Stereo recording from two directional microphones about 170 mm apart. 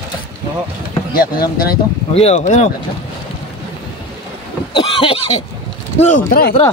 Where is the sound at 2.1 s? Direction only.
40° left (ahead or behind).